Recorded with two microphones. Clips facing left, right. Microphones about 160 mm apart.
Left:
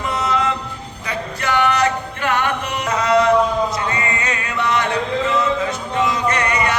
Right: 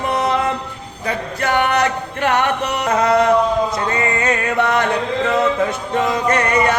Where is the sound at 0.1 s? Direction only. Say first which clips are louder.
Right 2 dB; 60° right (ahead or behind).